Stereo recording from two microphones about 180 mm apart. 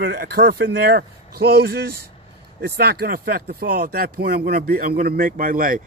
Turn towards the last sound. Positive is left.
turn(degrees=-50)  # may be behind; listen again after turning